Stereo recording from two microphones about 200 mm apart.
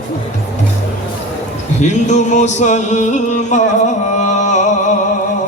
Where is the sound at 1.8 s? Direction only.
35° left (ahead or behind).